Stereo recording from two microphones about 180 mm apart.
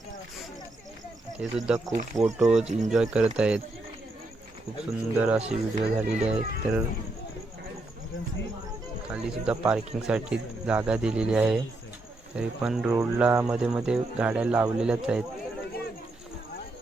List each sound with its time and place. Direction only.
1.4 s speech: 5° right (ahead or behind)
2.1 s speech: 20° right (ahead or behind)
2.5 s speech: 5° right (ahead or behind)
5.1 s speech: 5° right (ahead or behind)
5.4 s speech: 35° right (ahead or behind)
5.8 s speech: 5° right (ahead or behind)
9.0 s speech: 5° right (ahead or behind)